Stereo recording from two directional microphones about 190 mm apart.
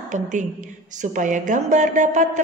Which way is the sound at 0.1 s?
40° right (ahead or behind).